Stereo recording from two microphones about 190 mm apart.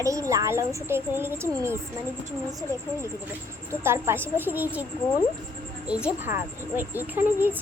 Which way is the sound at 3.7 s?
15° right (ahead or behind).